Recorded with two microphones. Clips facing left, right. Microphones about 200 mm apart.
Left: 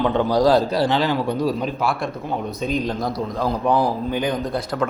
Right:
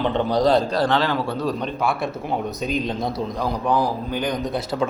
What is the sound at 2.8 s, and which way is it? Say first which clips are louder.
Speech: left 1 dB; 20° right (ahead or behind).